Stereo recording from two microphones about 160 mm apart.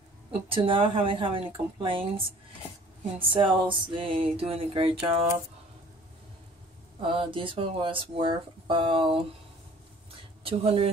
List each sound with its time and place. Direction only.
0.3 s speech: 35° right (ahead or behind)
7.1 s speech: 35° right (ahead or behind)
10.4 s speech: 35° right (ahead or behind)